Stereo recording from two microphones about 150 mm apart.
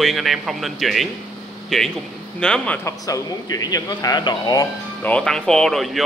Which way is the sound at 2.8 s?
20° left (ahead or behind).